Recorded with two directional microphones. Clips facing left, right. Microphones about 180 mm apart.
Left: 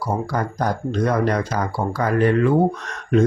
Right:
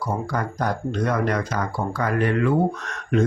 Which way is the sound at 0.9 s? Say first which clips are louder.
Left 4 dB; 35° left (ahead or behind).